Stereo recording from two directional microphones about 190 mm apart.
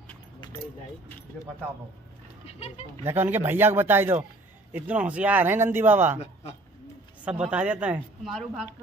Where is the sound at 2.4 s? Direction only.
35° left (ahead or behind).